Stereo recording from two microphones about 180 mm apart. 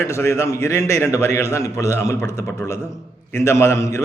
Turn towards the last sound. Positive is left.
turn(degrees=15)  # may be behind; listen again after turning